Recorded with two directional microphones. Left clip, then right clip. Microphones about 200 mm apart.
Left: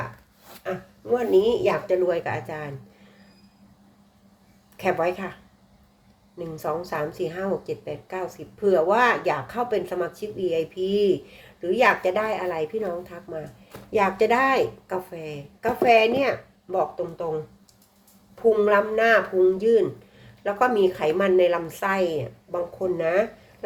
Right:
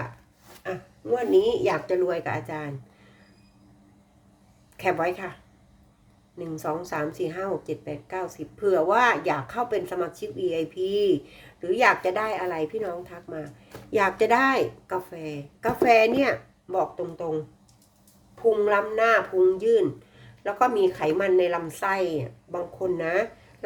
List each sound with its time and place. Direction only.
0.6 s speech: 5° right (ahead or behind)
4.8 s speech: 10° right (ahead or behind)
6.4 s speech: 10° right (ahead or behind)
18.5 s a woman's voice: centre (ahead or behind)